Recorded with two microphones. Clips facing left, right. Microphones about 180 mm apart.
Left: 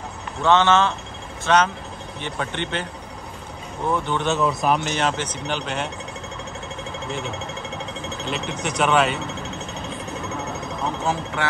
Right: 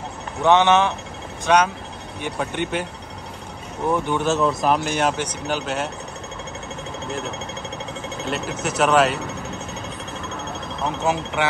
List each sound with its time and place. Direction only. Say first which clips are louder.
0.4 s speech: right 1 dB; 15° right (ahead or behind)
3.9 s speech: right 2 dB; 10° right (ahead or behind)
4.3 s speech: right 1 dB; centre (ahead or behind)
8.3 s speech: right 2 dB; 5° right (ahead or behind)